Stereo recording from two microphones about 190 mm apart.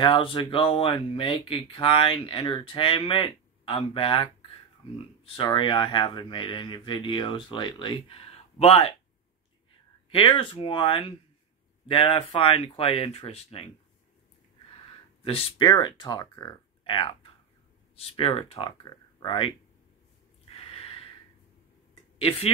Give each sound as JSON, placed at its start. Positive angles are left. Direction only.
{"t": 0.0, "sound": "speech", "side_deg": 25}
{"t": 10.1, "sound": "speech", "side_deg": 25}
{"t": 15.2, "sound": "speech", "side_deg": 30}
{"t": 20.4, "sound": "a sound", "side_deg": 30}
{"t": 22.2, "sound": "speech", "side_deg": 30}